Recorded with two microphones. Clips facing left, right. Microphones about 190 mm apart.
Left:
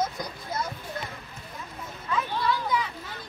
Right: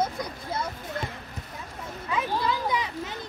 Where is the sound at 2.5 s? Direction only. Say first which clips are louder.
Even; 20° right (ahead or behind).